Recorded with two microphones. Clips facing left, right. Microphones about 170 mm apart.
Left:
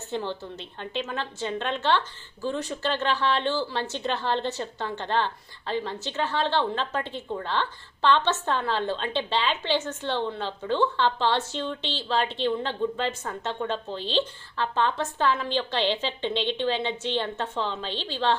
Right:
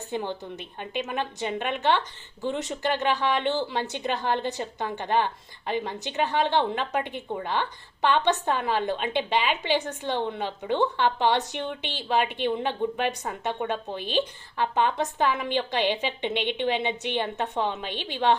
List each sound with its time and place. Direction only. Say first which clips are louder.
0.1 s a woman's voice: even; 15° right (ahead or behind)